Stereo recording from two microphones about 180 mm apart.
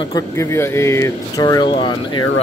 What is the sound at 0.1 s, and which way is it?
Speech, 15° left (ahead or behind).